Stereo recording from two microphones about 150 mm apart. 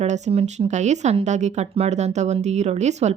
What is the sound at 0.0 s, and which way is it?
Speech, 45° right (ahead or behind).